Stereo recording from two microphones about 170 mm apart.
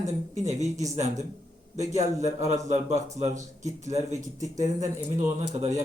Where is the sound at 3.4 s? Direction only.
20° right (ahead or behind).